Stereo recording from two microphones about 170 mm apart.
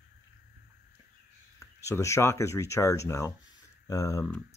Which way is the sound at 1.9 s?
15° left (ahead or behind).